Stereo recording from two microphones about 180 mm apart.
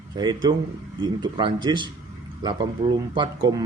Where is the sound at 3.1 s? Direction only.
25° right (ahead or behind).